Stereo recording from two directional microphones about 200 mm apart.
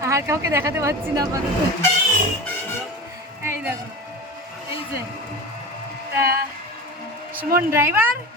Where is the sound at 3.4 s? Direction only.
10° right (ahead or behind).